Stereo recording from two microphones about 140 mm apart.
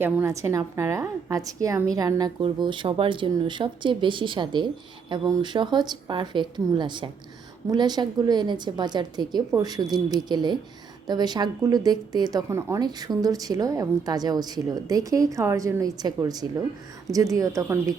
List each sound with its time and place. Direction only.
0.0 s speech: 20° right (ahead or behind)